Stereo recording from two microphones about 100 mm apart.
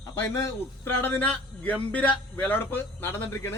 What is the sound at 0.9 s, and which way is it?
A man's voice, 20° left (ahead or behind).